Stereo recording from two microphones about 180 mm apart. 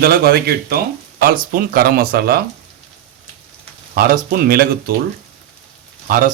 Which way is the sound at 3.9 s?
50° right (ahead or behind).